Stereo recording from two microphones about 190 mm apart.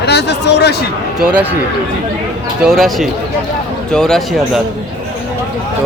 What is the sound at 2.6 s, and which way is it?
Speech, centre (ahead or behind).